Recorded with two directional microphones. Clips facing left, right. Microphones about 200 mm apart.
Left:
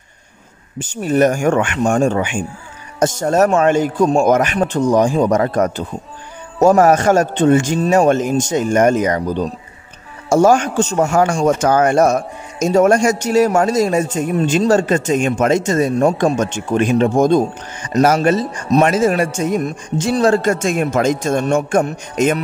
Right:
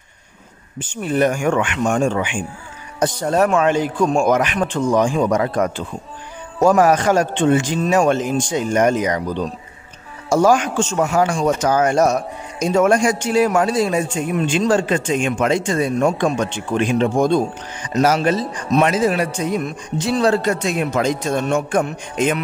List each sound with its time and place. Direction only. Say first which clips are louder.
0.7 s a man's voice: left 4 dB; 40° left (ahead or behind)